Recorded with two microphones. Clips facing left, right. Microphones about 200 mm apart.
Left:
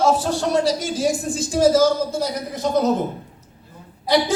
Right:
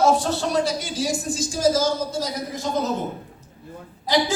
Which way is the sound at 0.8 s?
50° left (ahead or behind).